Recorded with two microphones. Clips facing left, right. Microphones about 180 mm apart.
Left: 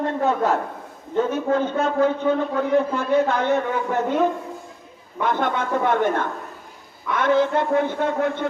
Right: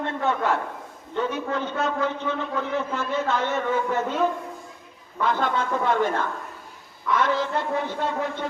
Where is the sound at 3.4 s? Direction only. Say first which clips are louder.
Left 3 dB; 60° left (ahead or behind).